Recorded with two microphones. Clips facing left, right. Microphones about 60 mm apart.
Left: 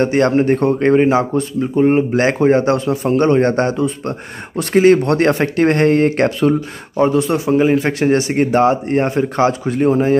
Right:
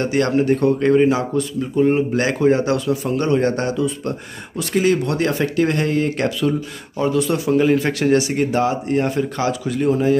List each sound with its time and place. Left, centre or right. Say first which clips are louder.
0.0 s speech: left 4 dB; left
7.0 s speech: left 4 dB; left